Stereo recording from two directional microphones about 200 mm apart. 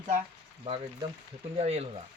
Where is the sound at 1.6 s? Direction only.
30° right (ahead or behind).